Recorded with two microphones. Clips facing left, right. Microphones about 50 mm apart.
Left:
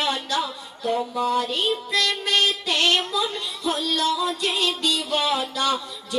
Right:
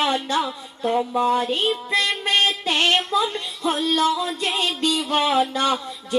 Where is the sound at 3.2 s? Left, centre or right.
Right.